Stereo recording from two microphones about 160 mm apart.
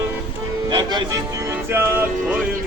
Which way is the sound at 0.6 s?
25° right (ahead or behind).